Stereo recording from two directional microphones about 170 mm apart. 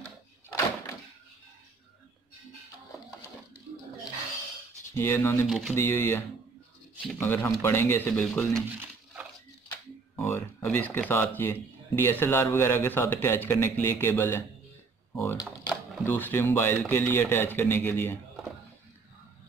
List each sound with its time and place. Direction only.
4.9 s a man's voice: 15° left (ahead or behind)
5.5 s speech: centre (ahead or behind)
5.8 s a man's voice: 15° left (ahead or behind)
8.7 s a sound: 5° right (ahead or behind)
9.7 s a man's voice: 10° left (ahead or behind)